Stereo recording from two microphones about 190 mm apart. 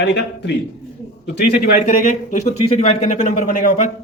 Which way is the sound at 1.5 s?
45° left (ahead or behind).